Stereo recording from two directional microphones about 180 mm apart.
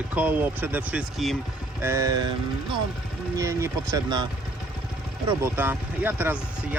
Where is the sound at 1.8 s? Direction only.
15° right (ahead or behind).